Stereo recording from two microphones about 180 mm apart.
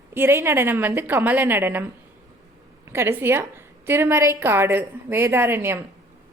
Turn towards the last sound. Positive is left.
turn(degrees=-15)  # may be behind; listen again after turning